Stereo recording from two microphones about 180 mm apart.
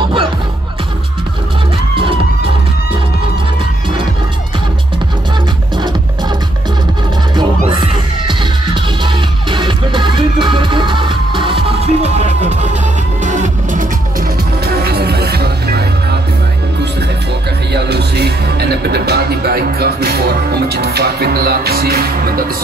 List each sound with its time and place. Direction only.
7.8 s music: 25° right (ahead or behind); by 13.8 s 45° right (ahead or behind)
14.7 s music: 60° right (ahead or behind)
17.7 s music: 65° right (ahead or behind)